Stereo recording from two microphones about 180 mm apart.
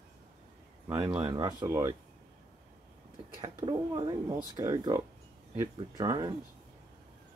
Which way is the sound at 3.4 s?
25° right (ahead or behind).